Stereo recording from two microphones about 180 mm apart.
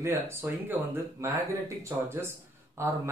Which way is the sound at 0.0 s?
15° right (ahead or behind).